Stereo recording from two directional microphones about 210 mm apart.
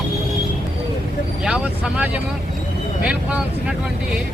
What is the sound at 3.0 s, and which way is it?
Speech, 5° right (ahead or behind).